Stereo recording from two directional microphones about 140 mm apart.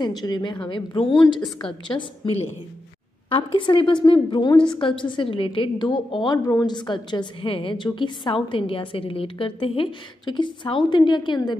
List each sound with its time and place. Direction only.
0.0 s a woman's voice: 30° left (ahead or behind)
3.3 s a woman's voice: 35° left (ahead or behind)